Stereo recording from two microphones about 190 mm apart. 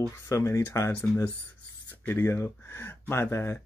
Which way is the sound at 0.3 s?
15° left (ahead or behind).